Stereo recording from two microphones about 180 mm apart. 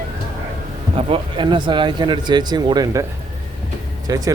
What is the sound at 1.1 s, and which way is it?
Speech, 25° right (ahead or behind).